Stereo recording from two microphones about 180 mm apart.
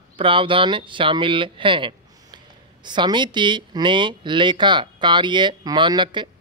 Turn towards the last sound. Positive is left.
turn(degrees=-25)  # may be behind; listen again after turning